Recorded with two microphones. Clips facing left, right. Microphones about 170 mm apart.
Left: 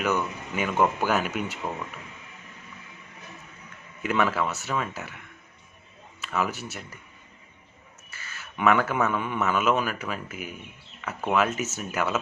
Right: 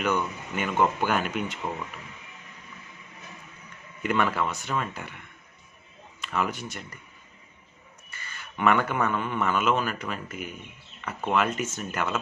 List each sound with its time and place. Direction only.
0.0 s a man's voice: 5° left (ahead or behind)
4.0 s a man's voice: 5° left (ahead or behind)
6.2 s speech: 5° left (ahead or behind)
8.1 s a man's voice: 5° left (ahead or behind)